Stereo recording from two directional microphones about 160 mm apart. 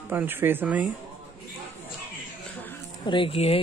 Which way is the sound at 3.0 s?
30° left (ahead or behind).